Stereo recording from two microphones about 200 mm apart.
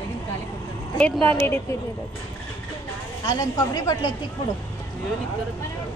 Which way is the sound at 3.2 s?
20° left (ahead or behind).